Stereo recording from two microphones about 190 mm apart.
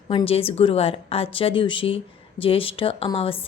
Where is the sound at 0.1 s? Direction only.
30° left (ahead or behind).